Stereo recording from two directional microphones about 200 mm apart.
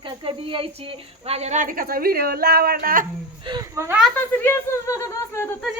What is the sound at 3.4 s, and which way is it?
Speech, 20° right (ahead or behind).